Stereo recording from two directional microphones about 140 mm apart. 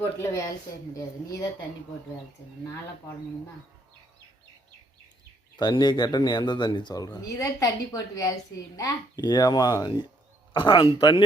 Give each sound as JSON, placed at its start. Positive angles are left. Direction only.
{"t": 0.0, "sound": "speech", "side_deg": 20}
{"t": 5.5, "sound": "speech", "side_deg": 30}